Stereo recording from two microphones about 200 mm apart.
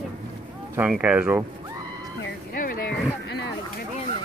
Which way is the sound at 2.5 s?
45° left (ahead or behind).